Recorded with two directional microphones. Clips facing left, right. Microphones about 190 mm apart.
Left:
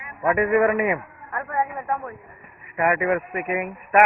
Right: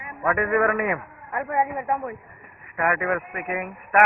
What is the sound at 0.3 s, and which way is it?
Speech, 15° left (ahead or behind).